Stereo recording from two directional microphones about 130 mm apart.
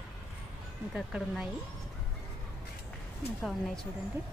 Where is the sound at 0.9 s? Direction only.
5° right (ahead or behind).